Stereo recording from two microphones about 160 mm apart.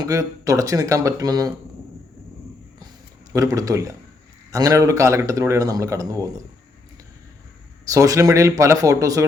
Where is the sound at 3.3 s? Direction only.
20° right (ahead or behind).